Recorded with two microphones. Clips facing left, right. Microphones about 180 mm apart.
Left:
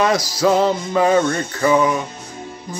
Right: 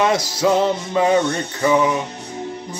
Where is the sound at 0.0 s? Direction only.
20° right (ahead or behind).